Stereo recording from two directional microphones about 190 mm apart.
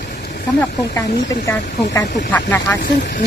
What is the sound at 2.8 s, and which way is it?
Speech, 60° left (ahead or behind).